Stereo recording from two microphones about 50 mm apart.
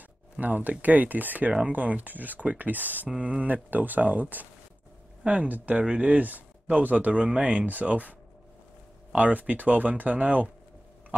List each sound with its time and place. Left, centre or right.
0.4 s speech: right
3.1 s speech: right
9.1 s speech: right